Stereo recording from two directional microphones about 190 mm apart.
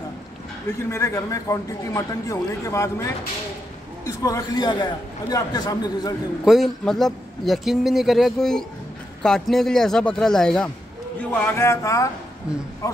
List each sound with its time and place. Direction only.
0.7 s a man's voice: 15° left (ahead or behind)
6.4 s a man's voice: centre (ahead or behind)
11.1 s a man's voice: 15° left (ahead or behind)